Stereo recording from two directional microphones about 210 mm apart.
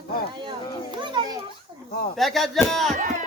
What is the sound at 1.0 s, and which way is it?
Children playing, 20° right (ahead or behind).